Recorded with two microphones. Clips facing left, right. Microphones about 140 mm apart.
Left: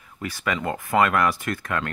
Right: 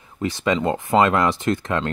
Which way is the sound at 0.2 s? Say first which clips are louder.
Right 6 dB; 25° right (ahead or behind).